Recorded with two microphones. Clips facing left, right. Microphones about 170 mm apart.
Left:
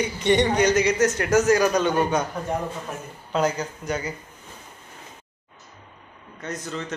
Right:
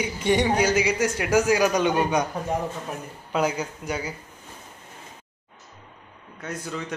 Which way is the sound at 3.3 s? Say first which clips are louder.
Left 1 dB; 10° right (ahead or behind).